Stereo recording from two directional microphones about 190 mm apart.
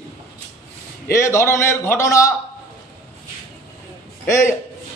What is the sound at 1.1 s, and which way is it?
A man's voice, 15° left (ahead or behind).